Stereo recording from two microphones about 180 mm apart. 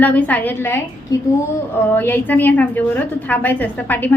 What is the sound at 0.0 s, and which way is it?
A woman's voice, 10° left (ahead or behind).